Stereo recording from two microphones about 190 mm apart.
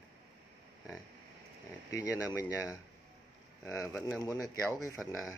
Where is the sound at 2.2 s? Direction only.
15° left (ahead or behind).